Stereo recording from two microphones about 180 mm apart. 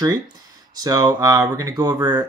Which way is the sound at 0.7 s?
20° right (ahead or behind).